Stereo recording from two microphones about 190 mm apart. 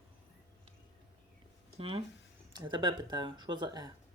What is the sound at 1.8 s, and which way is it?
Speech, 30° right (ahead or behind).